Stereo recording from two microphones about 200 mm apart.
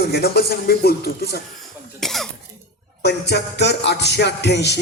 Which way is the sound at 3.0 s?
55° left (ahead or behind).